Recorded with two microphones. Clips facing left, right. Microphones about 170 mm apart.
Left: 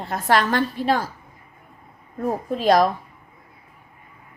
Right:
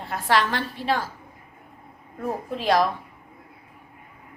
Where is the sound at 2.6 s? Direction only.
45° left (ahead or behind).